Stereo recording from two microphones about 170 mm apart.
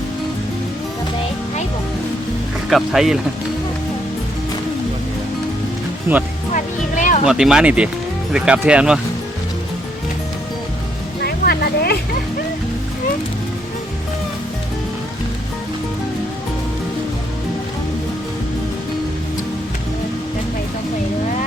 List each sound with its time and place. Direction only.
2.6 s speech: centre (ahead or behind)
6.1 s speech: 15° right (ahead or behind)
6.5 s music: 50° left (ahead or behind)
7.3 s speech: 5° right (ahead or behind)
11.2 s a sound: 65° left (ahead or behind)